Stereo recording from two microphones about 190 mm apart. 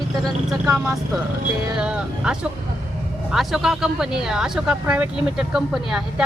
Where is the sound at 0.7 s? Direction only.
15° right (ahead or behind).